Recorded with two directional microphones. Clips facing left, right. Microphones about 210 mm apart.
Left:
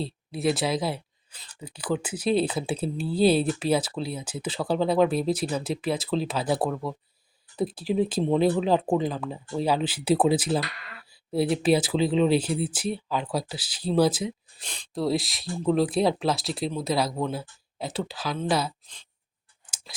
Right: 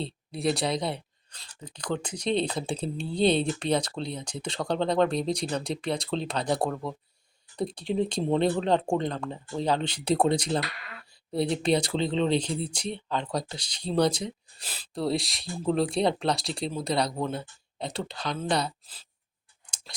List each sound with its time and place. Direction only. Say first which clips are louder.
0.0 s speech: left 2 dB; centre (ahead or behind)